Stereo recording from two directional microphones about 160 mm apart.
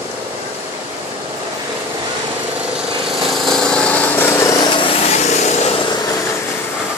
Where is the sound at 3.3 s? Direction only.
Centre (ahead or behind); by 4.7 s 20° left (ahead or behind).